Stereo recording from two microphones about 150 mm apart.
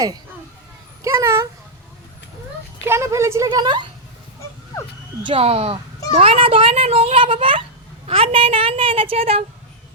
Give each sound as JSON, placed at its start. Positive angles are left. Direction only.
{"t": 1.0, "sound": "a sound", "side_deg": -20}
{"t": 2.8, "sound": "a woman's voice", "side_deg": -15}
{"t": 5.2, "sound": "a child's voice", "side_deg": -40}